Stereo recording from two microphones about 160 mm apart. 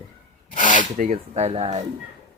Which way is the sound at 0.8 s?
55° right (ahead or behind).